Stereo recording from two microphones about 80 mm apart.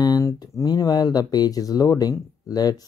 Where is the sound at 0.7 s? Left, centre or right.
Left.